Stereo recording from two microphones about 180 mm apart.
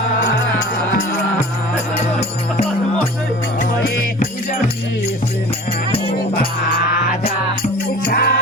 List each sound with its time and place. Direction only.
1.1 s music: 40° left (ahead or behind)
8.0 s music: 60° left (ahead or behind)